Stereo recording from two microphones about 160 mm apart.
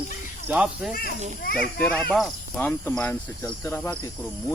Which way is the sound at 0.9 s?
65° left (ahead or behind).